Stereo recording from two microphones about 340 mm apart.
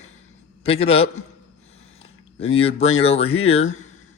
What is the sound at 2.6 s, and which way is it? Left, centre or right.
Speech, centre.